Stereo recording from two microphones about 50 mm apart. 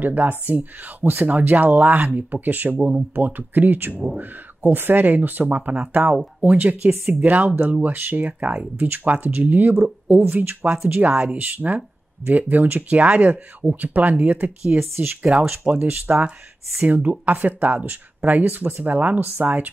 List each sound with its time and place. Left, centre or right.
0.0 s speech: right
12.9 s speech: right